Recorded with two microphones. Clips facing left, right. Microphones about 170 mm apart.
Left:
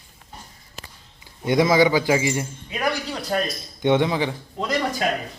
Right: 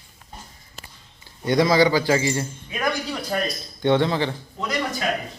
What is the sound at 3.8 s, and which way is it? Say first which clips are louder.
Speech: even; 15° left (ahead or behind).